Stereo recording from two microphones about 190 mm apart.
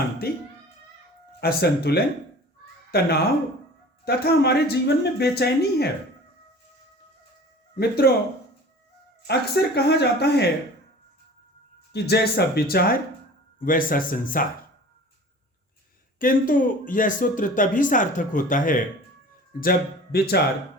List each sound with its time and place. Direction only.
1.4 s speech: 55° left (ahead or behind)
7.8 s speech: 55° left (ahead or behind)
9.2 s speech: 60° left (ahead or behind)
11.9 s speech: 60° left (ahead or behind)
16.1 s speech: 45° left (ahead or behind)